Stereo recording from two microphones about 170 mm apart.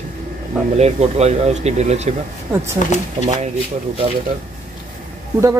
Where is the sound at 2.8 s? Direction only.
50° left (ahead or behind).